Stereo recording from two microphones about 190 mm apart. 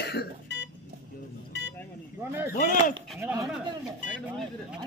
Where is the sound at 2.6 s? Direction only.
45° left (ahead or behind).